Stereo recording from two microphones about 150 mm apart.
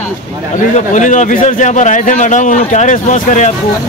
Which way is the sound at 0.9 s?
55° left (ahead or behind).